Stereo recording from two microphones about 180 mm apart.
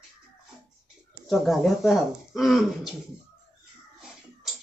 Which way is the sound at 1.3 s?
Centre (ahead or behind).